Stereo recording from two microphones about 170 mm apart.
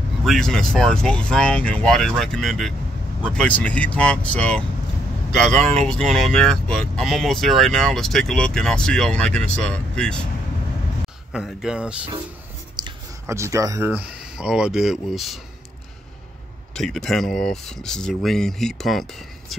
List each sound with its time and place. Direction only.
0.2 s speech: 5° left (ahead or behind)
11.3 s speech: 5° right (ahead or behind)
12.8 s a sound: 25° right (ahead or behind)
13.3 s speech: 15° right (ahead or behind); by 15.4 s centre (ahead or behind)
16.7 s speech: centre (ahead or behind)